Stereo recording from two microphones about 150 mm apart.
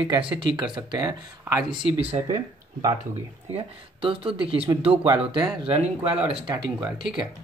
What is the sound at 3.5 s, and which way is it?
Speech, 35° right (ahead or behind).